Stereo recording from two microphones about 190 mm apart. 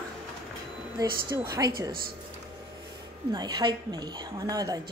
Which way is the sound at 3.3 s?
25° right (ahead or behind).